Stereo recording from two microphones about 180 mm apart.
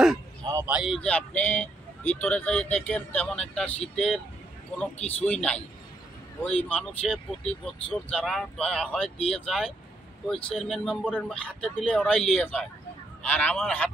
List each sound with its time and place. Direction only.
0.7 s speech: 5° right (ahead or behind)
1.0 s speech: 10° left (ahead or behind)